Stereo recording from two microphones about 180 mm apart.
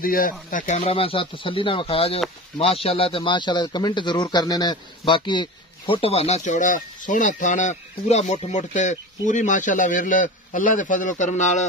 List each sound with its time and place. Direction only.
0.0 s a man's voice: 50° left (ahead or behind)